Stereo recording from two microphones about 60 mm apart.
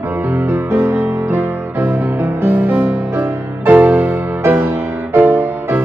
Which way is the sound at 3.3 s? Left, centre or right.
Right.